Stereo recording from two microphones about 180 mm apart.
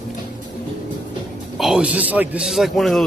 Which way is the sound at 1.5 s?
Centre (ahead or behind).